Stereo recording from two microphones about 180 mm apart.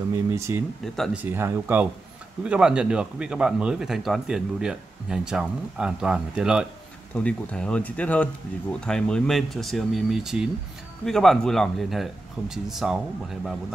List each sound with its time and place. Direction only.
0.3 s speech: 15° right (ahead or behind)
0.9 s speech: centre (ahead or behind)
1.2 s speech: 10° right (ahead or behind)